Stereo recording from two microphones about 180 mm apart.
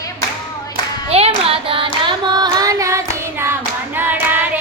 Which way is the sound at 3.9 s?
10° right (ahead or behind).